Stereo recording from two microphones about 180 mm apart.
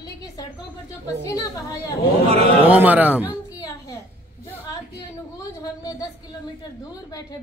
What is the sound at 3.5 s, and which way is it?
A woman's voice, 20° left (ahead or behind).